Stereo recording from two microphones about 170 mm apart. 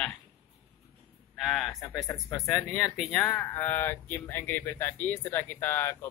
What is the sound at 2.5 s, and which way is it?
Speech, centre (ahead or behind).